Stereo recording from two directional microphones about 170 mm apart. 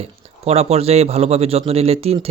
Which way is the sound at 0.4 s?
40° right (ahead or behind).